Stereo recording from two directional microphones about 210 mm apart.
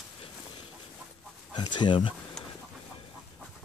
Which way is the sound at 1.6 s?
20° left (ahead or behind).